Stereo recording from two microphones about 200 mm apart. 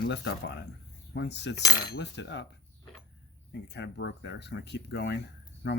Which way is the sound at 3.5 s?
60° left (ahead or behind).